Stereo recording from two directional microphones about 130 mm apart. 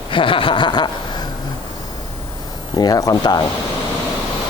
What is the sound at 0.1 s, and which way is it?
Chuckle, 40° left (ahead or behind).